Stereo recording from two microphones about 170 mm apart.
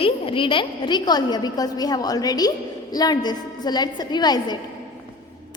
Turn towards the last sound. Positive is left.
turn(degrees=25)  # may be behind; listen again after turning